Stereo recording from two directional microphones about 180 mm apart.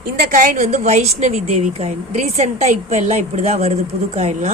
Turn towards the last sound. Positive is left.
turn(degrees=-35)  # may be behind; listen again after turning